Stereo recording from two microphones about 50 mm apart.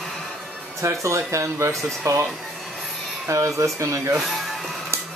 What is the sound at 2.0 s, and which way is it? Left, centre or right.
Speech, right.